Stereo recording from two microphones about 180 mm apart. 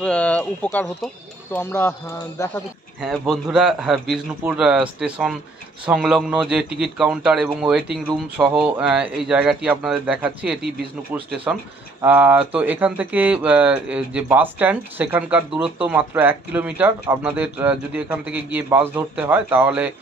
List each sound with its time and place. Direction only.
0.0 s speech: 5° left (ahead or behind)
3.0 s speech: centre (ahead or behind)